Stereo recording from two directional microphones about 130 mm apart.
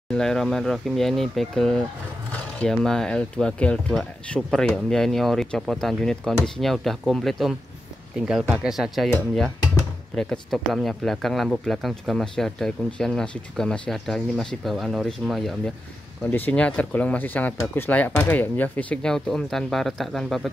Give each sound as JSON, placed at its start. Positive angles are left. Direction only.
{"t": 0.1, "sound": "speech", "side_deg": 5}
{"t": 10.1, "sound": "speech", "side_deg": 5}
{"t": 16.3, "sound": "speech", "side_deg": 15}